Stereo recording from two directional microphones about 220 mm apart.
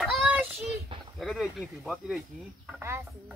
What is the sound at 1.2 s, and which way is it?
Speech, centre (ahead or behind).